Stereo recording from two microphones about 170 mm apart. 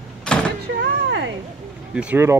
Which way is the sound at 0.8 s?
90° right.